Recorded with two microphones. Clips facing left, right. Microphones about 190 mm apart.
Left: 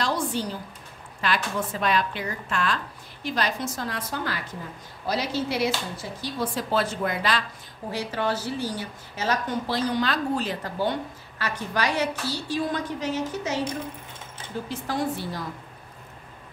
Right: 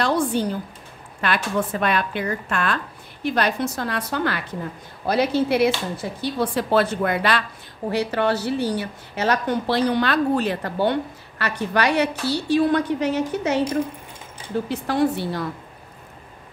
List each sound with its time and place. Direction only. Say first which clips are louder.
0.0 s a sound: right 6 dB; 55° right (ahead or behind)
1.2 s a woman's voice: right 4 dB; 60° right (ahead or behind)
14.7 s a woman's voice: right 7 dB; 65° right (ahead or behind)